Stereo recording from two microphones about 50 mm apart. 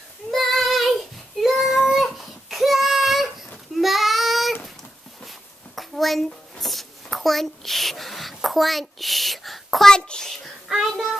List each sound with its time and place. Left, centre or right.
0.3 s child singing: centre
5.8 s a sound: centre
9.8 s a child's voice: centre
10.9 s child singing: centre